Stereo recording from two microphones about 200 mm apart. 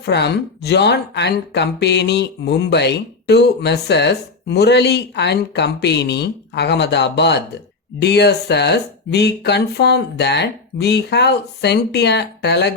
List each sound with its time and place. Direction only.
0.0 s speech: 55° left (ahead or behind)